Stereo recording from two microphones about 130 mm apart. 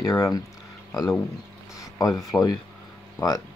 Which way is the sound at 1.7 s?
25° left (ahead or behind).